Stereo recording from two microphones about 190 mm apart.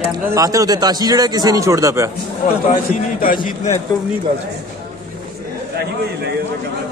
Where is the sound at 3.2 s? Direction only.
45° left (ahead or behind).